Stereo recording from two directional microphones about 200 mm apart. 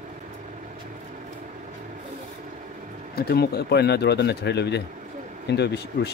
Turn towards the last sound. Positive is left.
turn(degrees=55)  # may be behind; listen again after turning